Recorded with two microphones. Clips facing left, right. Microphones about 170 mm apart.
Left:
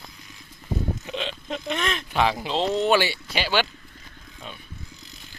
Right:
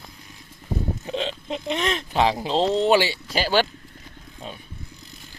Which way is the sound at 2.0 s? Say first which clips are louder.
Right 2 dB; 30° right (ahead or behind).